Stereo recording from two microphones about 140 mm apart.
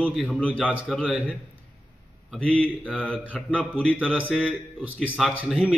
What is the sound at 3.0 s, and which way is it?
Speech, 10° left (ahead or behind).